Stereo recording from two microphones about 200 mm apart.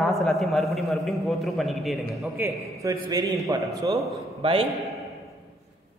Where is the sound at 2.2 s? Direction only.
15° right (ahead or behind).